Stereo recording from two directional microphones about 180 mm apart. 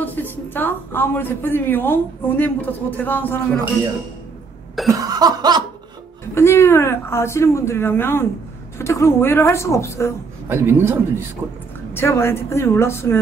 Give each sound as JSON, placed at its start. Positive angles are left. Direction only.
{"t": 0.0, "sound": "a woman's voice", "side_deg": 10}
{"t": 4.8, "sound": "cough", "side_deg": -20}
{"t": 6.3, "sound": "a woman's voice", "side_deg": 15}
{"t": 10.5, "sound": "a man's voice", "side_deg": -10}
{"t": 11.9, "sound": "a woman's voice", "side_deg": 15}